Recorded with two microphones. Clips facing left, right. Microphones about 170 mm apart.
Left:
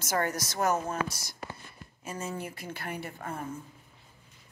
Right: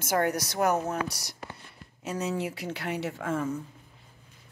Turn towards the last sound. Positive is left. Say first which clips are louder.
# right 7 dB
turn(degrees=-90)